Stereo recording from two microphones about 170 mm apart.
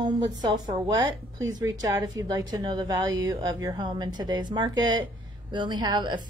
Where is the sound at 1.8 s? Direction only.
20° right (ahead or behind).